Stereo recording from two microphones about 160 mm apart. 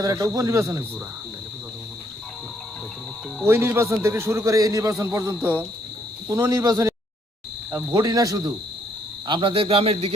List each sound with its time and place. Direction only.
0.0 s cricket: 20° right (ahead or behind)
3.4 s a man's voice: 15° right (ahead or behind)
6.2 s cricket: 20° right (ahead or behind)
9.2 s a man's voice: 30° right (ahead or behind)